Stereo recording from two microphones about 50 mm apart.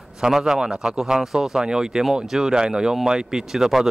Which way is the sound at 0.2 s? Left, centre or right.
Centre.